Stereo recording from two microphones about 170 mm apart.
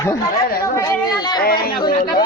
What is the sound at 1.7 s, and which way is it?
Speech, 30° left (ahead or behind).